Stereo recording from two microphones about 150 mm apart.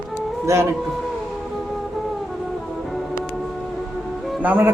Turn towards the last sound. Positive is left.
turn(degrees=-10)  # may be behind; listen again after turning